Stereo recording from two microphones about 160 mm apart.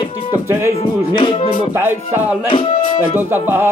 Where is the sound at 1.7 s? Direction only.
15° right (ahead or behind).